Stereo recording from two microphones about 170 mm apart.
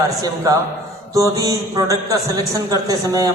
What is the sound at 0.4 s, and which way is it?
A man's voice, 20° right (ahead or behind).